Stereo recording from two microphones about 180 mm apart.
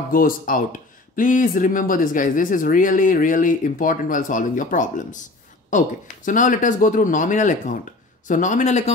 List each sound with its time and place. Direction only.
0.1 s speech: 50° left (ahead or behind)